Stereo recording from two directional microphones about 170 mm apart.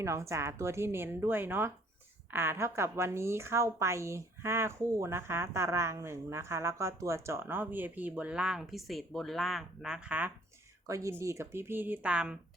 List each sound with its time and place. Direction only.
0.0 s a woman's voice: 15° right (ahead or behind)
10.8 s a woman's voice: 20° right (ahead or behind)